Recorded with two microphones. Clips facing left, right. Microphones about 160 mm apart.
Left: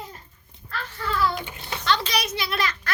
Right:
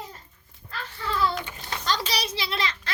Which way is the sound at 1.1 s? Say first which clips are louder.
Left 1 dB; 25° right (ahead or behind).